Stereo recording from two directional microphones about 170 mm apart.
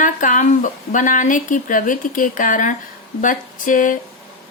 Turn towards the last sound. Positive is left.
turn(degrees=50)  # may be behind; listen again after turning